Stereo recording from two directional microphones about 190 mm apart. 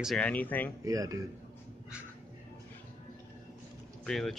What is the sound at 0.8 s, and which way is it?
Speech, 20° right (ahead or behind).